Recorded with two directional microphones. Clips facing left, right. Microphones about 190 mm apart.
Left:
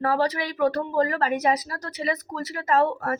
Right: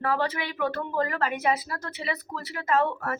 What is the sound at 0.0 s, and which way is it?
A woman's voice, 40° left (ahead or behind).